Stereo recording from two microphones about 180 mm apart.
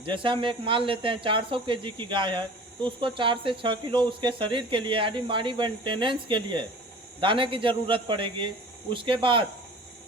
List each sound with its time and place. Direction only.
0.0 s speech: 25° right (ahead or behind)